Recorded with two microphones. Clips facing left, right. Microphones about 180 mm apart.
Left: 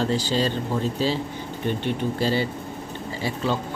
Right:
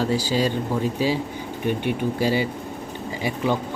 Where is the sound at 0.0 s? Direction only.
10° right (ahead or behind).